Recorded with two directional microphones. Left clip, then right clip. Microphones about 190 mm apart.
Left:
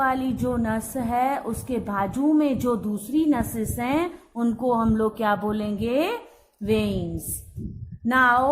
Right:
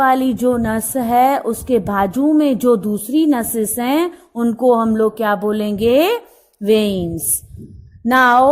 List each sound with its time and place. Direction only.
0.0 s a woman's voice: 35° right (ahead or behind)
8.0 s a woman's voice: 40° right (ahead or behind)